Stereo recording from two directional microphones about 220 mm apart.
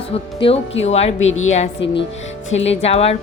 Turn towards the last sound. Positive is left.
turn(degrees=25)  # may be behind; listen again after turning